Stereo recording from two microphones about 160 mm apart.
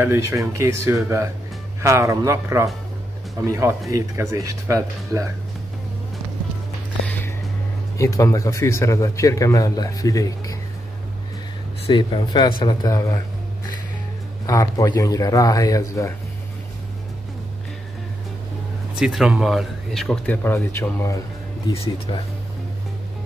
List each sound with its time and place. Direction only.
0.0 s speech: 15° right (ahead or behind)
3.9 s speech: 20° right (ahead or behind)
8.0 s speech: 20° left (ahead or behind)
11.9 s speech: 25° left (ahead or behind)
14.4 s speech: 20° left (ahead or behind)
18.9 s speech: 5° right (ahead or behind)
20.4 s speech: 15° left (ahead or behind)
21.8 s speech: 35° left (ahead or behind)